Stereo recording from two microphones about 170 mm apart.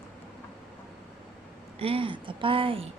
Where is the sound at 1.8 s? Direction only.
35° right (ahead or behind).